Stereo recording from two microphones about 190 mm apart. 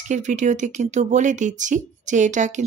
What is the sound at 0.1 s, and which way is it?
Speech, 40° right (ahead or behind).